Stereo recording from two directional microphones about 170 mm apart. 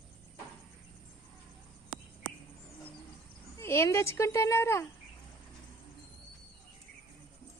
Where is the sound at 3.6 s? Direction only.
15° left (ahead or behind).